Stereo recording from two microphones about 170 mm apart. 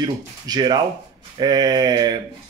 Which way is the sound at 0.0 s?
25° right (ahead or behind).